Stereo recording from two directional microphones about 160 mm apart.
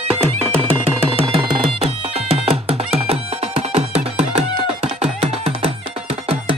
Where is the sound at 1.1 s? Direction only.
35° right (ahead or behind).